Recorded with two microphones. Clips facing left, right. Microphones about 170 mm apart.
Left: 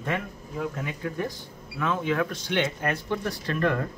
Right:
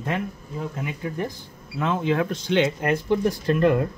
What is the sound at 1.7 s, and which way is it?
Speech, 25° right (ahead or behind).